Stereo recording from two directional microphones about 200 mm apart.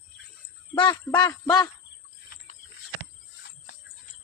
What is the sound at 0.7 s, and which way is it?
Speech, 25° left (ahead or behind).